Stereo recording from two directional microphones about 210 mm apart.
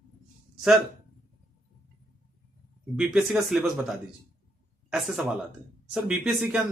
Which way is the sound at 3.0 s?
5° right (ahead or behind).